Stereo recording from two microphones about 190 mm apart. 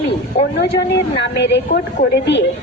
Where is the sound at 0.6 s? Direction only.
60° left (ahead or behind).